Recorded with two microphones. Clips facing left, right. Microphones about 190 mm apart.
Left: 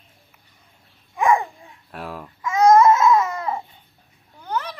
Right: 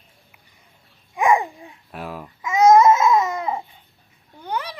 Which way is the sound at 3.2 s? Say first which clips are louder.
Right 1 dB; 15° right (ahead or behind).